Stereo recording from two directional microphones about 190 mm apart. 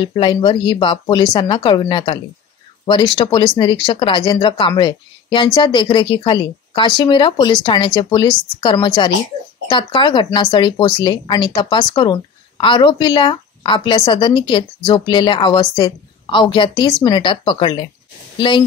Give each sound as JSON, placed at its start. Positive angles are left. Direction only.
{"t": 0.0, "sound": "speech", "side_deg": 25}